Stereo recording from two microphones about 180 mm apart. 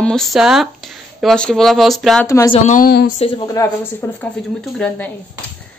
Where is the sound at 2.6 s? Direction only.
50° left (ahead or behind).